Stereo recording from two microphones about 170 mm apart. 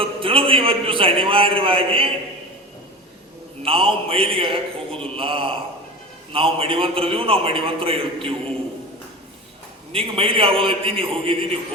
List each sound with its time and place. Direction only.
0.0 s a man's voice: 30° right (ahead or behind)
3.6 s a man's voice: 30° right (ahead or behind)
9.9 s a man's voice: 35° right (ahead or behind)